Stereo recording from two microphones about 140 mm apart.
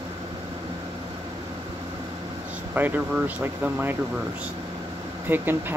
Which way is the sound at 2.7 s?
10° right (ahead or behind).